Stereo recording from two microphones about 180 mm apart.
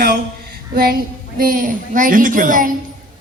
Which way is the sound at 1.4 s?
50° right (ahead or behind).